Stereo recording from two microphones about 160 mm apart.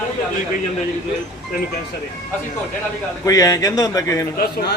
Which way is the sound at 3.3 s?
20° left (ahead or behind).